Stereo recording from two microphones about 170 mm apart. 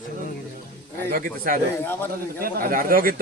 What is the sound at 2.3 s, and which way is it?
Speech, 60° right (ahead or behind).